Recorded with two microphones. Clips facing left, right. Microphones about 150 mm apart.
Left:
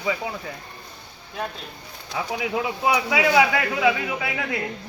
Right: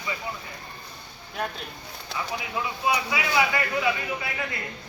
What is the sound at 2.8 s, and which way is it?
A man's voice, 90° left.